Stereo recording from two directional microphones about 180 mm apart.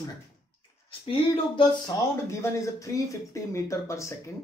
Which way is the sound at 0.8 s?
30° left (ahead or behind).